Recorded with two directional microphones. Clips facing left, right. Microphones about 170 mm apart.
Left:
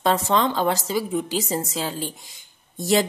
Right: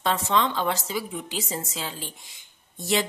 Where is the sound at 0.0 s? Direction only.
40° left (ahead or behind).